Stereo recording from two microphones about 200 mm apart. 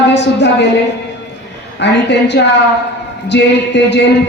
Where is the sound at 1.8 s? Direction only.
60° left (ahead or behind).